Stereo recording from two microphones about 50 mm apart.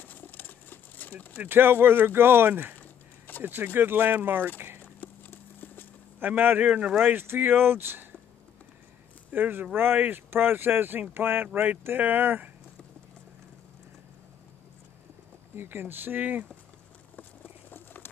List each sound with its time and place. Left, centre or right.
0.0 s a sound: left
1.4 s speech: right
5.0 s clip-clop: left
6.1 s speech: right
9.3 s speech: right
15.5 s speech: right
17.2 s patter: left